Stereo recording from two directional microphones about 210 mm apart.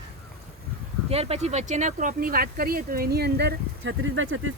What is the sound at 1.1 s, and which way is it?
Speech, 30° right (ahead or behind).